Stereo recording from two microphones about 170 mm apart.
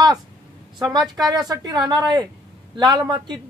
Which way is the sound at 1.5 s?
25° right (ahead or behind).